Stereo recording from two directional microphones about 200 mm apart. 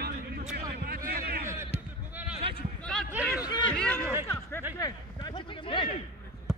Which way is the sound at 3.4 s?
20° left (ahead or behind).